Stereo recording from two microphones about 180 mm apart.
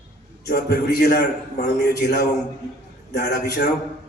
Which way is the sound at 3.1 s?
65° left (ahead or behind).